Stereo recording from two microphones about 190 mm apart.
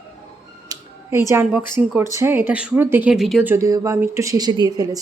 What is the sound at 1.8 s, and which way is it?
A woman's voice, 10° right (ahead or behind).